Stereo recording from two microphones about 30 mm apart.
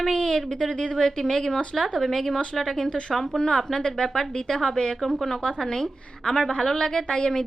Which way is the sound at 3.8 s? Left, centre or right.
Left.